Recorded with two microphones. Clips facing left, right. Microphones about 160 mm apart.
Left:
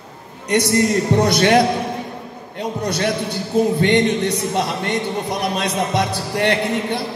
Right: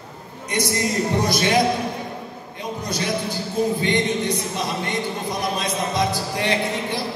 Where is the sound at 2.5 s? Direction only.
70° left (ahead or behind).